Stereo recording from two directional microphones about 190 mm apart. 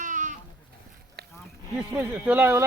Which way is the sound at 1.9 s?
5° right (ahead or behind).